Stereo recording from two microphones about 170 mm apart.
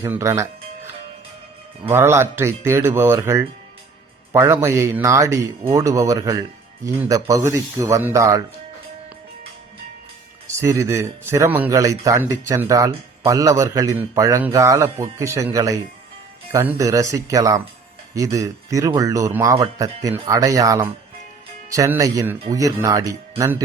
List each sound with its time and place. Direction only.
0.1 s speech: 15° right (ahead or behind)
1.8 s speech: 15° right (ahead or behind)
10.5 s speech: 20° right (ahead or behind)